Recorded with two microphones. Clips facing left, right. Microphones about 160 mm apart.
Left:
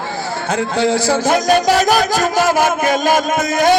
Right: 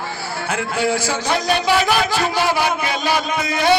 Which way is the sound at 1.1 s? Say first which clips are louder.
Left 6 dB; 45° left (ahead or behind).